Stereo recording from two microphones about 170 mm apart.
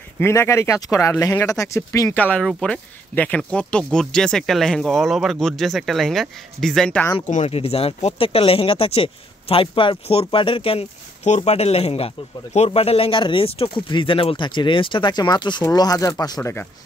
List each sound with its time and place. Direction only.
0.2 s speech: 15° left (ahead or behind)
7.2 s speech: 40° left (ahead or behind); by 16.6 s 20° left (ahead or behind)